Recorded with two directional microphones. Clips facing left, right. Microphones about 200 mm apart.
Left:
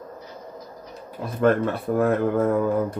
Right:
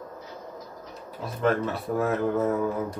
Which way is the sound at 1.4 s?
55° left (ahead or behind).